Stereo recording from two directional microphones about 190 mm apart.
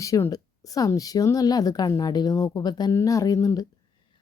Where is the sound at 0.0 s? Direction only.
15° left (ahead or behind).